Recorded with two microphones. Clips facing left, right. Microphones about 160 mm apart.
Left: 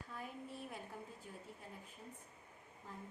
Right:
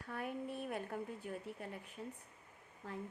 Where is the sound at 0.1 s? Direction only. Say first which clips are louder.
Right 8 dB; 65° right (ahead or behind).